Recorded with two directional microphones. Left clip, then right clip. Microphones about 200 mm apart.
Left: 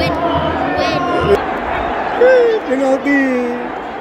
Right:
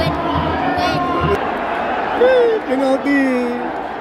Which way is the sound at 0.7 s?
5° right (ahead or behind).